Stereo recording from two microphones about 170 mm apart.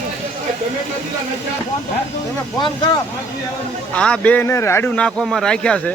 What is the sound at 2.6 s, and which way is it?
Speech, 25° left (ahead or behind).